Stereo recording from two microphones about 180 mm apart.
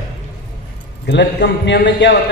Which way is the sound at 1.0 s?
75° left (ahead or behind).